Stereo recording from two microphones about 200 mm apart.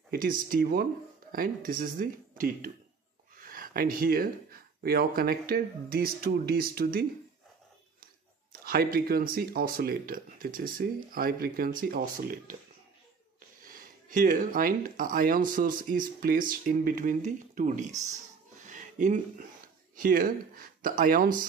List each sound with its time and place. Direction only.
0.1 s speech: 45° right (ahead or behind)
8.6 s speech: 50° right (ahead or behind)
13.6 s speech: 45° right (ahead or behind)
18.7 s a sound: 40° right (ahead or behind)
20.0 s speech: 45° right (ahead or behind)